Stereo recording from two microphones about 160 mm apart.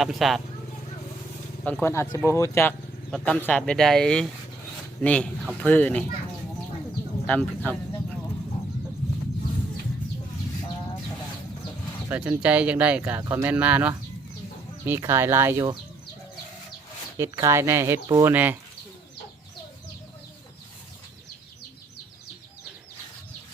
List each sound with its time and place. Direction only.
0.0 s speech: centre (ahead or behind)
1.6 s speech: 10° left (ahead or behind)
7.3 s speech: 10° left (ahead or behind)
12.0 s speech: 10° right (ahead or behind)
17.2 s speech: 20° right (ahead or behind)